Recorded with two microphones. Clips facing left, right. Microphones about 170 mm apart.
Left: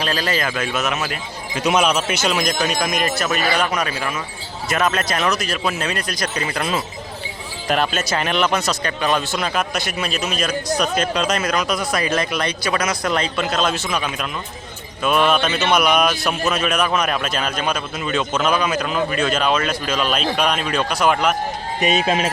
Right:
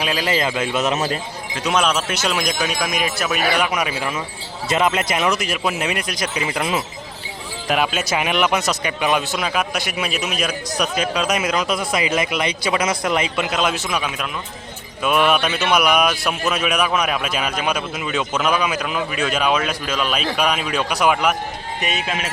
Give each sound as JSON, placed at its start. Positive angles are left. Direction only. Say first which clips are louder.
{"t": 0.0, "sound": "speech", "louder": "even", "side_deg": -10}
{"t": 0.3, "sound": "a man's voice", "louder": "right 2 dB", "side_deg": -20}
{"t": 1.6, "sound": "speech", "louder": "left 2 dB", "side_deg": 0}
{"t": 21.8, "sound": "speech", "louder": "left 7 dB", "side_deg": 20}
{"t": 22.0, "sound": "speech", "louder": "left 6 dB", "side_deg": 35}